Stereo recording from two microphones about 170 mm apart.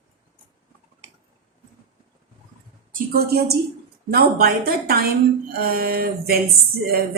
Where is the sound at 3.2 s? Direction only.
65° right (ahead or behind).